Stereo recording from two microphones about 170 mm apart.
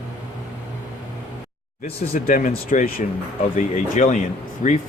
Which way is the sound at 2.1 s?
55° left (ahead or behind).